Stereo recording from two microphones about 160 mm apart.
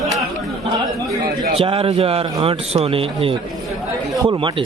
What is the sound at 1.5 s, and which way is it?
A man's voice, 35° right (ahead or behind).